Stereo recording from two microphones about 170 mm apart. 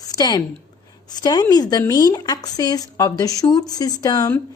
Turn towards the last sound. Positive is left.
turn(degrees=20)  # may be behind; listen again after turning